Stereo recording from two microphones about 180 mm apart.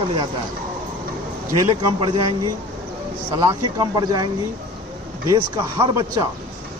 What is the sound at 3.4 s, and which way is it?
Speech, 20° right (ahead or behind).